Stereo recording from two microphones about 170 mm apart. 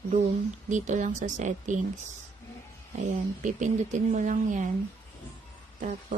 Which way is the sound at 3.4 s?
50° right (ahead or behind).